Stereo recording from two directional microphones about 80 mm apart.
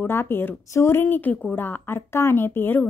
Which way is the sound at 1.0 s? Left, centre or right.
Left.